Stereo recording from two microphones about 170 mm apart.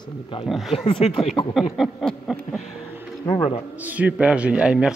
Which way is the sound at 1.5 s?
Centre (ahead or behind).